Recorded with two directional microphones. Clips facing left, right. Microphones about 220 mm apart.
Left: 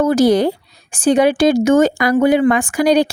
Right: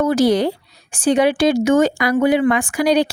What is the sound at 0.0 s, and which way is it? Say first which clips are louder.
Speech: left 3 dB; 45° left (ahead or behind).